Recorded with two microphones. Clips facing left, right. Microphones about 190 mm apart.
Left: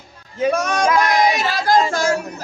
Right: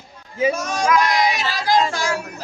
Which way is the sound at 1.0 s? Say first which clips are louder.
Left 3 dB; 50° left (ahead or behind).